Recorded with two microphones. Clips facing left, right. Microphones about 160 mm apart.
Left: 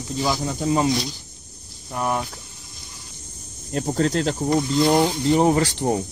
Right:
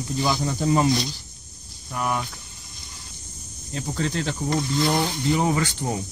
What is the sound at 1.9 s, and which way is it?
Speech, 30° left (ahead or behind).